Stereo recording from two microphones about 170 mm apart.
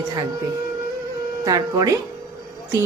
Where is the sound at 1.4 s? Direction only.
20° right (ahead or behind).